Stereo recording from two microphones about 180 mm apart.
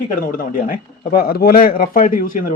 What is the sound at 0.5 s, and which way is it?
Speech, 55° left (ahead or behind).